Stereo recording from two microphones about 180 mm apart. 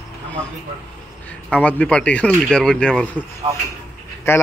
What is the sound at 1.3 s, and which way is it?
Speech, 5° left (ahead or behind).